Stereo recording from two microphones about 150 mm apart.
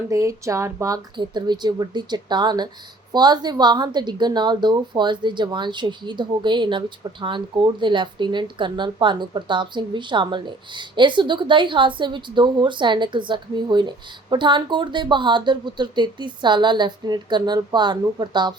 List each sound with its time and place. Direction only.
0.1 s speech: 20° right (ahead or behind)
1.1 s a woman's voice: 30° right (ahead or behind)